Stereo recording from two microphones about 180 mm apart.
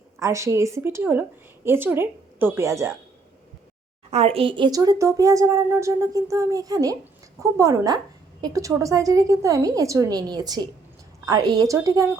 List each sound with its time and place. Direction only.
0.2 s a woman's voice: 15° right (ahead or behind)
4.1 s a woman's voice: 35° right (ahead or behind)